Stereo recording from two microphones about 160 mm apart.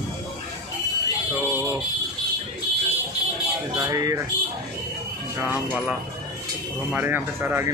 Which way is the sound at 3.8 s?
20° right (ahead or behind).